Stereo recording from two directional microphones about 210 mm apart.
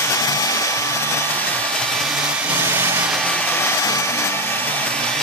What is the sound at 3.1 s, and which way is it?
Hair dryer, 5° left (ahead or behind).